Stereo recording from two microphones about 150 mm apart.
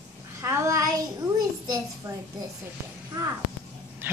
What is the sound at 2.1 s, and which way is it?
Speech, 20° right (ahead or behind).